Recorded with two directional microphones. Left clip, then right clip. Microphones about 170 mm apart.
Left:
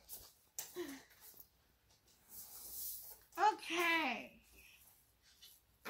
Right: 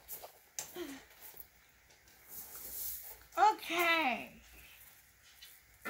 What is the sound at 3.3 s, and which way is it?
Speech, 50° right (ahead or behind).